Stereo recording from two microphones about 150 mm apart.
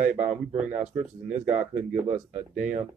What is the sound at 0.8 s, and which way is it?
Speech, 55° right (ahead or behind).